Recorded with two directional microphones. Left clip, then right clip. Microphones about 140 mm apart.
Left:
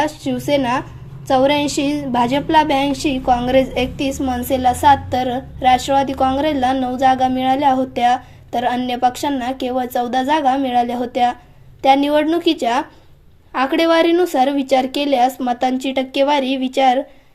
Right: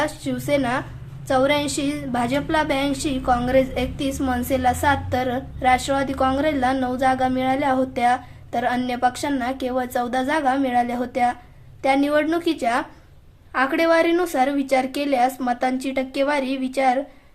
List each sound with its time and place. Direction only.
0.0 s a woman's voice: 10° left (ahead or behind)